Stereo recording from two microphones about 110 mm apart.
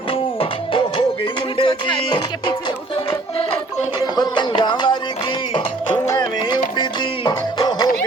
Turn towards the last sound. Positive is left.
turn(degrees=40)  # may be behind; listen again after turning